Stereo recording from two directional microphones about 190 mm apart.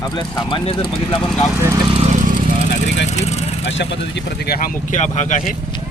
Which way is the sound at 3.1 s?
35° left (ahead or behind).